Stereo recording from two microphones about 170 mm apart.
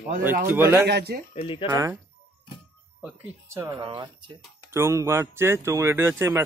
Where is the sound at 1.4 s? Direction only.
30° left (ahead or behind).